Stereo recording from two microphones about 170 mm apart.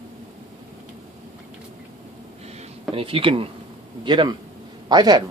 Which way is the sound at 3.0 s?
30° right (ahead or behind).